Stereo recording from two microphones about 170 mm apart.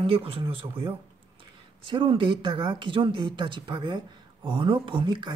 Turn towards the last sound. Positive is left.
turn(degrees=-25)  # may be behind; listen again after turning